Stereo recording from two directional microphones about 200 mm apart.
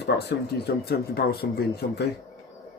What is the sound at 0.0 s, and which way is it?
Speech, 55° left (ahead or behind).